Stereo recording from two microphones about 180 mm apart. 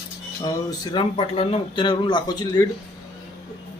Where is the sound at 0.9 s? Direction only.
30° left (ahead or behind).